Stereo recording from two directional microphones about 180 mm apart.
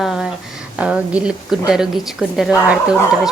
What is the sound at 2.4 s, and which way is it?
Speech, 5° right (ahead or behind).